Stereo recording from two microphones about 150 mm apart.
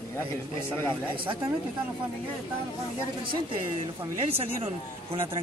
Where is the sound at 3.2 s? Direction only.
35° right (ahead or behind).